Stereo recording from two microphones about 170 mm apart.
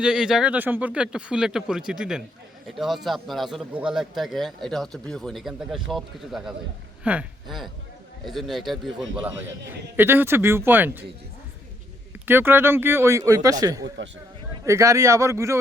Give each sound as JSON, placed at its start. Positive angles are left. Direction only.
{"t": 0.0, "sound": "speech", "side_deg": -5}
{"t": 10.0, "sound": "speech", "side_deg": -10}
{"t": 12.2, "sound": "speech", "side_deg": -10}